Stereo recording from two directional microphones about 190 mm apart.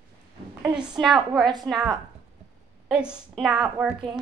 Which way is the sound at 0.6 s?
5° right (ahead or behind).